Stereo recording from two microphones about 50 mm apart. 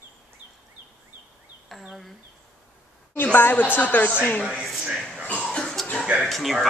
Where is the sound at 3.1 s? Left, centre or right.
Left.